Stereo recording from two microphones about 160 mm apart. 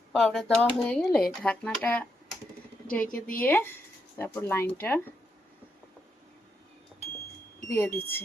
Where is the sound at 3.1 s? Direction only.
60° left (ahead or behind).